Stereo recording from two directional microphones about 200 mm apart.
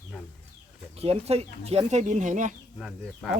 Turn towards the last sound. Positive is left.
turn(degrees=0)  # may be behind; listen again after turning